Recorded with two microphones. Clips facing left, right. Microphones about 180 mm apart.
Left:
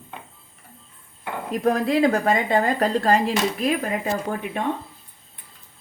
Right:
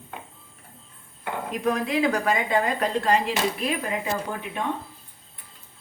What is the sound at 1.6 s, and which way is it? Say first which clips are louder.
Speech: left 4 dB; 40° left (ahead or behind).